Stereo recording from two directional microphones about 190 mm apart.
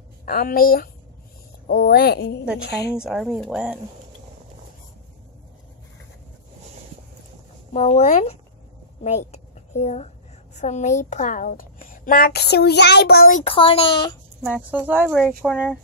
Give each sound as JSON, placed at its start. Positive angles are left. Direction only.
{"t": 0.2, "sound": "a woman's voice", "side_deg": 50}
{"t": 3.0, "sound": "speech", "side_deg": 0}
{"t": 7.7, "sound": "a woman's voice", "side_deg": 35}
{"t": 13.4, "sound": "a child's voice", "side_deg": 30}
{"t": 14.4, "sound": "speech", "side_deg": -5}